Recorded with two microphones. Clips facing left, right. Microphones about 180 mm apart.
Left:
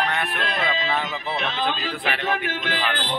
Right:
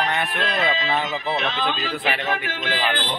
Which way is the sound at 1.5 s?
50° left (ahead or behind).